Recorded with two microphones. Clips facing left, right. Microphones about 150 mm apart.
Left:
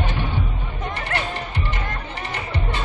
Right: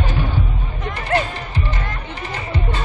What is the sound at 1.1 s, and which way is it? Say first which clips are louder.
Music: right 9 dB; 30° right (ahead or behind).